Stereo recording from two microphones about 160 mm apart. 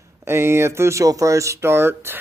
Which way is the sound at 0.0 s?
15° right (ahead or behind).